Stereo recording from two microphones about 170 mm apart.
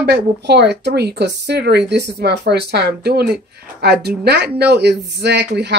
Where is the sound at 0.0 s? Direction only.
75° right (ahead or behind).